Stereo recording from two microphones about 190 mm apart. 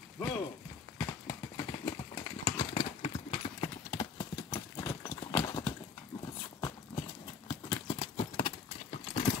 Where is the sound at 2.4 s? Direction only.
30° left (ahead or behind).